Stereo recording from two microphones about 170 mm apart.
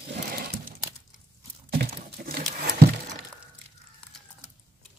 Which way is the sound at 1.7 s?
60° right (ahead or behind).